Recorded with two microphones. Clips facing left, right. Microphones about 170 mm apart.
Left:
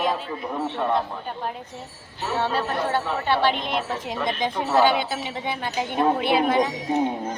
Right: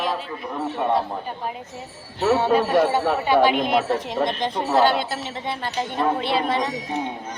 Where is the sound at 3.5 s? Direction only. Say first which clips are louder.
Right 7 dB; 50° right (ahead or behind).